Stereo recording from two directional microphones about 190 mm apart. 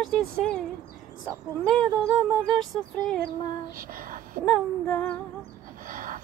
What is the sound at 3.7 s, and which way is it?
Speech, 45° right (ahead or behind).